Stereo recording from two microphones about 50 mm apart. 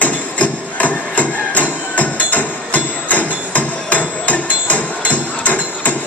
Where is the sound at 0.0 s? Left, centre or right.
Left.